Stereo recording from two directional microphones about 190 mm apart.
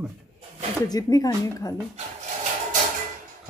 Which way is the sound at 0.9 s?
20° left (ahead or behind).